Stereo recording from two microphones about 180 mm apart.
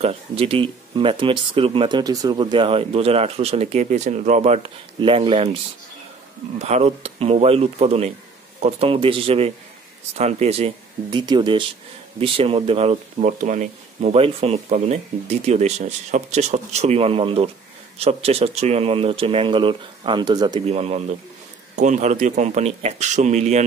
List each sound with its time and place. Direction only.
0.0 s speech: 30° right (ahead or behind)
6.6 s speech: 35° right (ahead or behind)